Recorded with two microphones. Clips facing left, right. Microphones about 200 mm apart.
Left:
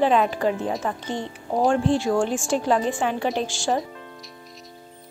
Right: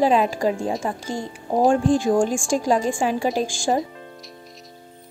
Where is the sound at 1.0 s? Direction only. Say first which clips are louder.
Right 1 dB; 40° right (ahead or behind).